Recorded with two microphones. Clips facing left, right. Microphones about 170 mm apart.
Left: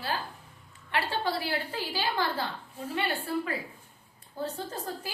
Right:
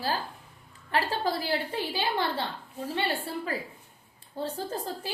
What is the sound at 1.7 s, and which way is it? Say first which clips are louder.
A woman's voice: right 2 dB; 20° right (ahead or behind).